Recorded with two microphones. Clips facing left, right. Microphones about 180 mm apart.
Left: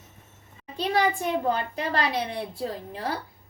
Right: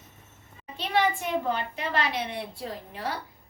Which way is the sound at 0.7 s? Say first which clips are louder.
Left 2 dB; 35° left (ahead or behind).